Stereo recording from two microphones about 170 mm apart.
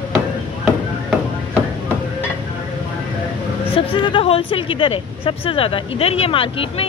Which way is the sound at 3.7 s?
30° left (ahead or behind).